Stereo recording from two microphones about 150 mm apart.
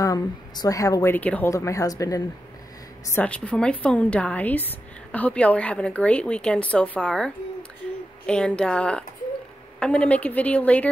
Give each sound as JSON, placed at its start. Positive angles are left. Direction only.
{"t": 0.0, "sound": "a woman's voice", "side_deg": 25}
{"t": 3.1, "sound": "a woman's voice", "side_deg": 10}